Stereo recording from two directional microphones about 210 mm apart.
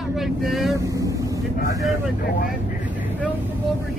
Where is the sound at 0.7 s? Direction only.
15° right (ahead or behind).